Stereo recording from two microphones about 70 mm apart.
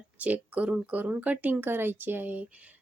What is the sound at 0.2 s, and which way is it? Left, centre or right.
Speech, right.